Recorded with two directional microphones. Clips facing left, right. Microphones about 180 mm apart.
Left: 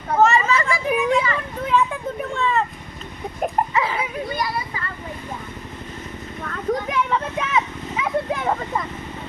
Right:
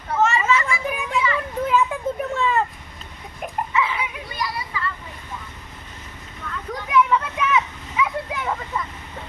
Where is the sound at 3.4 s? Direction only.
35° left (ahead or behind).